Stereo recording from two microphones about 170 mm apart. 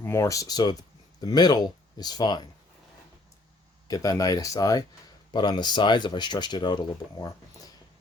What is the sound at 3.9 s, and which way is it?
Speech, 20° left (ahead or behind).